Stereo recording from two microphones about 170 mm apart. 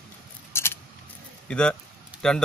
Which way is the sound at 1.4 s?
5° left (ahead or behind).